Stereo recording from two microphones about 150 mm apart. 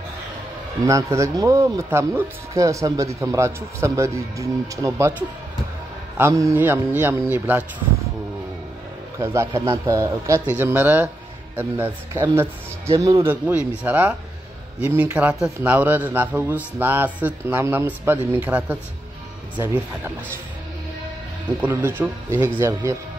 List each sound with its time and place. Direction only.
0.8 s speech: 20° right (ahead or behind)
6.1 s a man's voice: 20° right (ahead or behind)
9.2 s a man's voice: 20° right (ahead or behind)
21.5 s a man's voice: 10° right (ahead or behind)